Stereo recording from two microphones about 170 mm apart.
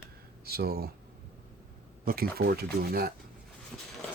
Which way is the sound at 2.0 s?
60° right (ahead or behind).